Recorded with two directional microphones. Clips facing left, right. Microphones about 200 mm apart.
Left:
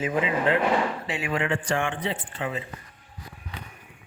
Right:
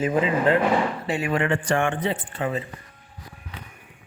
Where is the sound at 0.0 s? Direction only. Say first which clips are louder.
Right 4 dB; 40° right (ahead or behind).